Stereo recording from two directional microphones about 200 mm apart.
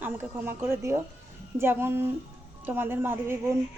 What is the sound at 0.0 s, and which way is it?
A woman's voice, 10° right (ahead or behind).